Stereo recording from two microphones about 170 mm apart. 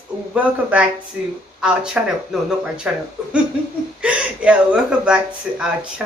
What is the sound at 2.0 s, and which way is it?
Speech, 5° right (ahead or behind).